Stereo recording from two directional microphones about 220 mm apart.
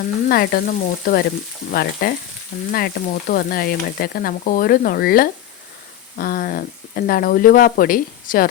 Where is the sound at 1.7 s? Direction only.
45° left (ahead or behind).